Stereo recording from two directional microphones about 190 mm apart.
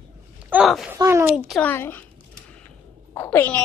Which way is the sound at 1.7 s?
10° left (ahead or behind).